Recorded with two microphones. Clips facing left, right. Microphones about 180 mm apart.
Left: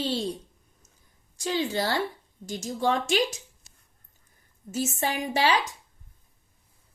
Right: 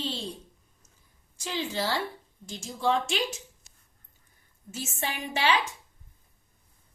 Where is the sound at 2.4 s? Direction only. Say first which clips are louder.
Left 2 dB; 40° left (ahead or behind).